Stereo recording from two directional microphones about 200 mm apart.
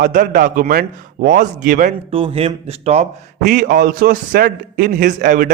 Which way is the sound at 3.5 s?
45° right (ahead or behind).